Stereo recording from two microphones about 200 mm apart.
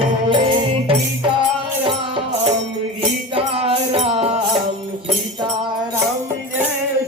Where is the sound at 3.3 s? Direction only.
30° right (ahead or behind).